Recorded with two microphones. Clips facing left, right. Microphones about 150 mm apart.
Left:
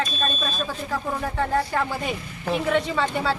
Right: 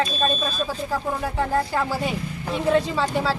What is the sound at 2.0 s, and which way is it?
Speech, 30° right (ahead or behind).